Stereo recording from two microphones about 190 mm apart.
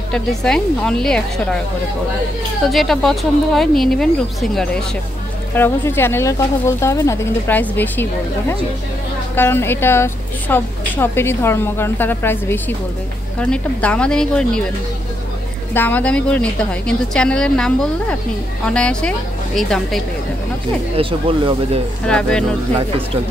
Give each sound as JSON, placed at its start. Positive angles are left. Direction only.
{"t": 0.1, "sound": "a woman's voice", "side_deg": 5}
{"t": 2.7, "sound": "a woman's voice", "side_deg": 0}
{"t": 15.7, "sound": "a woman's voice", "side_deg": 10}
{"t": 20.9, "sound": "speech", "side_deg": -30}
{"t": 22.0, "sound": "a woman's voice", "side_deg": 5}